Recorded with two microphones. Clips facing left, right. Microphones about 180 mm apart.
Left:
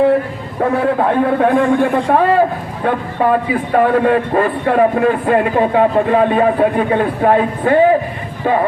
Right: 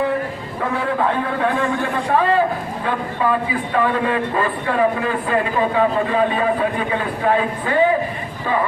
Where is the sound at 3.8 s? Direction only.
50° left (ahead or behind).